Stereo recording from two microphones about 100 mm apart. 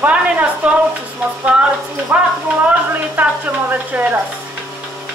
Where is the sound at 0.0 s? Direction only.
15° right (ahead or behind).